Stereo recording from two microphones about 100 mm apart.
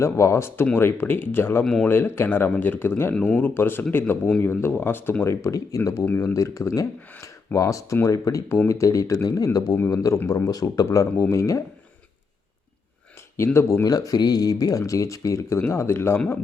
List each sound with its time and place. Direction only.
0.0 s speech: 30° left (ahead or behind)
1.6 s speech: 10° left (ahead or behind)
1.9 s speech: 20° left (ahead or behind)
13.3 s speech: 25° left (ahead or behind)
13.8 s speech: 40° left (ahead or behind)